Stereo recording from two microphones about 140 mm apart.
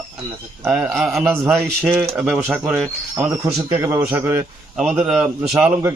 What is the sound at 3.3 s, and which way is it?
A man's voice, 20° right (ahead or behind).